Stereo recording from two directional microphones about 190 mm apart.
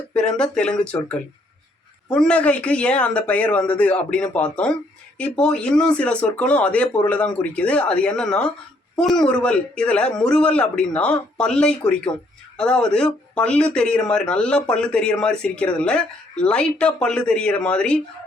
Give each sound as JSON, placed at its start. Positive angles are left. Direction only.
{"t": 0.1, "sound": "speech", "side_deg": 5}